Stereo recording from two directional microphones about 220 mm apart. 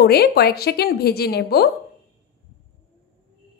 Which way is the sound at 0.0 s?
45° left (ahead or behind).